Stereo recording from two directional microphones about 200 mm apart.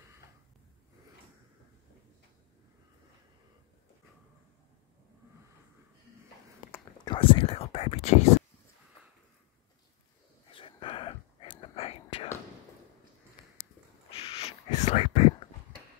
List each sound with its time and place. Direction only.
7.1 s speech: 25° left (ahead or behind)
10.5 s whispering: 25° left (ahead or behind)
14.1 s a sound: 30° left (ahead or behind)